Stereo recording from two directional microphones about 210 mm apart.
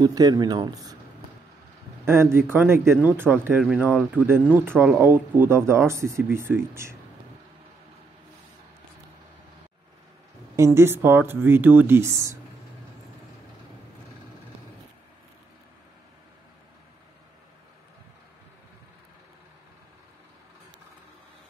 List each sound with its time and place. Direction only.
0.0 s speech: 20° right (ahead or behind)
2.5 s speech: 10° right (ahead or behind)
10.5 s speech: 15° right (ahead or behind)